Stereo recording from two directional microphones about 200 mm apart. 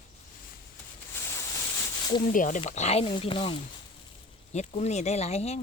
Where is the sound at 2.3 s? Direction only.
40° left (ahead or behind).